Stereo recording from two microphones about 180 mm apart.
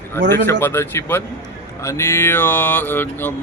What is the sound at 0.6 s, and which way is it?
Speech, 10° left (ahead or behind).